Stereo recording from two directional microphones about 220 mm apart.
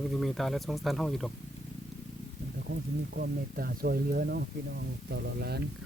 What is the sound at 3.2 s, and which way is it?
Speech, 40° right (ahead or behind).